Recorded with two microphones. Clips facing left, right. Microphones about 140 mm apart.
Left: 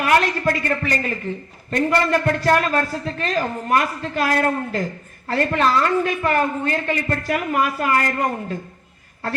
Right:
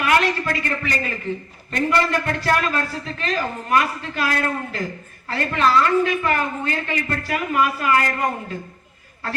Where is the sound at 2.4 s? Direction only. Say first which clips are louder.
Left 3 dB; 40° left (ahead or behind).